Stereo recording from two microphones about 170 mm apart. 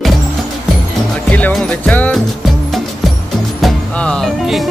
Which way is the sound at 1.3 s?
5° left (ahead or behind).